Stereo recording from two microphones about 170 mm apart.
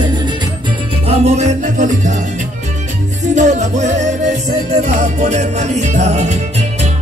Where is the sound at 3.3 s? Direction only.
45° right (ahead or behind).